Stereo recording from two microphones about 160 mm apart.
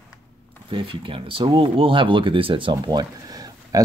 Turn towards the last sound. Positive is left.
turn(degrees=-25)  # may be behind; listen again after turning